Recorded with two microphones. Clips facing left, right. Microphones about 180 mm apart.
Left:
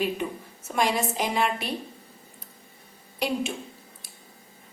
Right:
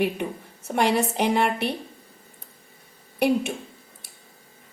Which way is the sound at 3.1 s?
60° right (ahead or behind).